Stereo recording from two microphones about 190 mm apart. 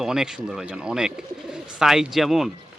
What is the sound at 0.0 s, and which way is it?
A man's voice, 5° right (ahead or behind).